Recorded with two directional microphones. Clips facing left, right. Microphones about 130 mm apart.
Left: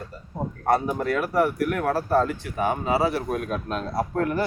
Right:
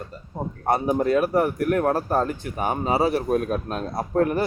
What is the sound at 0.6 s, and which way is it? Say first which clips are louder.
Speech: right 2 dB; 20° right (ahead or behind).